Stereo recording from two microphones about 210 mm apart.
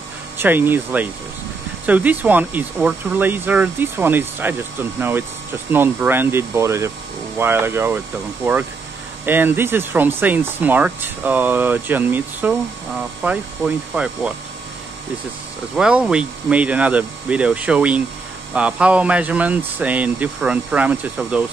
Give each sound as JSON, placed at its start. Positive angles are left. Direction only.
{"t": 0.4, "sound": "speech", "side_deg": -10}
{"t": 9.2, "sound": "speech", "side_deg": -10}
{"t": 15.7, "sound": "speech", "side_deg": -5}